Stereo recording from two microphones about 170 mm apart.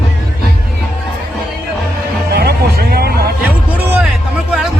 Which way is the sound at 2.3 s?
70° right (ahead or behind).